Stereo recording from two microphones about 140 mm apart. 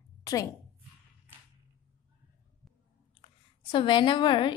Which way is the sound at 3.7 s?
35° left (ahead or behind).